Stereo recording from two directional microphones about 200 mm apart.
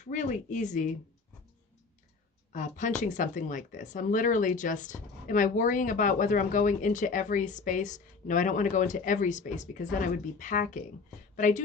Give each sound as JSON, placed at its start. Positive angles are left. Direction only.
{"t": 0.0, "sound": "speech", "side_deg": 40}
{"t": 2.5, "sound": "speech", "side_deg": 40}